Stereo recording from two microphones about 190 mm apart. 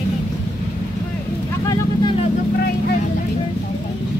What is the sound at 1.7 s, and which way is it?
Vehicle, 25° left (ahead or behind).